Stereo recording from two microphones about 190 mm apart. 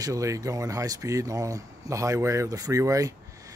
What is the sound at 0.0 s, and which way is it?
Speech, 15° right (ahead or behind).